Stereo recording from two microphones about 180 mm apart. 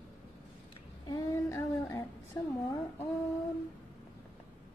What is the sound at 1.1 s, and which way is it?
A woman's voice, 20° left (ahead or behind).